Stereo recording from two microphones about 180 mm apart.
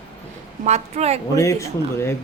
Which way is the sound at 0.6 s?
35° right (ahead or behind).